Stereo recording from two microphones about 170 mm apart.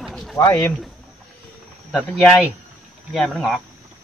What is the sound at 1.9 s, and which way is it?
Speech, 5° left (ahead or behind).